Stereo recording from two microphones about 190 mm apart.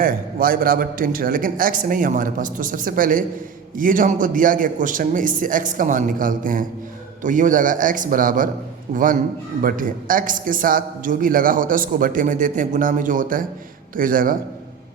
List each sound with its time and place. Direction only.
0.0 s a man's voice: 50° right (ahead or behind)